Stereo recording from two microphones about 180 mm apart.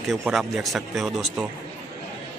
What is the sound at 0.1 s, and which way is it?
A man's voice, centre (ahead or behind).